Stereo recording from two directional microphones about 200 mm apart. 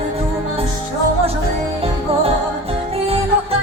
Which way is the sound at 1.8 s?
30° right (ahead or behind).